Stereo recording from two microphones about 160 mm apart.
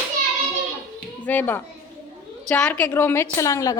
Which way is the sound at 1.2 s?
10° left (ahead or behind).